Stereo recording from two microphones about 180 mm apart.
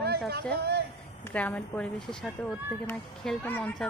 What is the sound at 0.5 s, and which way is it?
Speech, 65° right (ahead or behind).